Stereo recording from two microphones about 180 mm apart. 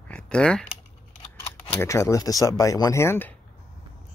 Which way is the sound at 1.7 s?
15° left (ahead or behind).